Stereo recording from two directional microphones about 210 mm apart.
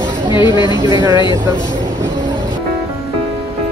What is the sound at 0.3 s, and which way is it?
Speech, 20° left (ahead or behind).